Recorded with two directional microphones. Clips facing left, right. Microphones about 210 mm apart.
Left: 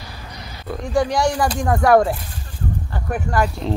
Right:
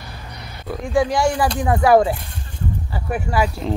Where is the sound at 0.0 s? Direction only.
60° right (ahead or behind).